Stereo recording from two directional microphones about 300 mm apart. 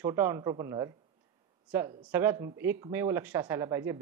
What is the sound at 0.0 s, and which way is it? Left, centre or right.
Speech, centre.